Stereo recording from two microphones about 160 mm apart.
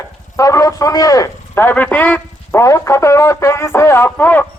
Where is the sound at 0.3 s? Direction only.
20° left (ahead or behind).